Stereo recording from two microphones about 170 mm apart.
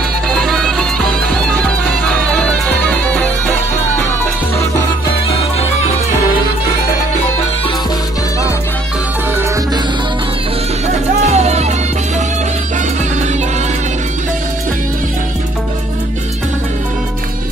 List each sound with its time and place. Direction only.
0.3 s music: 5° left (ahead or behind)
11.2 s music: 40° right (ahead or behind)